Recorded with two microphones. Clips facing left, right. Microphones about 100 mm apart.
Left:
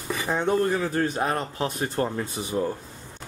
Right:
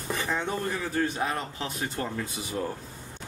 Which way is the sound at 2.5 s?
25° left (ahead or behind).